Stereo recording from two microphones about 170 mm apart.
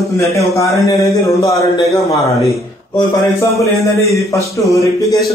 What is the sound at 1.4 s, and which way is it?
Speech, 20° left (ahead or behind).